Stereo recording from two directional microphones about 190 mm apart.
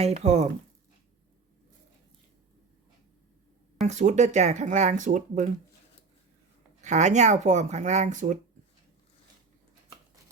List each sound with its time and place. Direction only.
0.0 s speech: 35° right (ahead or behind)
3.8 s speech: 40° right (ahead or behind)
6.8 s speech: 40° right (ahead or behind)